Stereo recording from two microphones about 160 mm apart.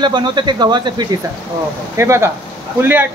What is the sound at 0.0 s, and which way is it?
Speech, 30° right (ahead or behind).